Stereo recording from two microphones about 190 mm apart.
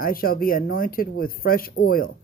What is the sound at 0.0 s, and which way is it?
Speech, 50° left (ahead or behind).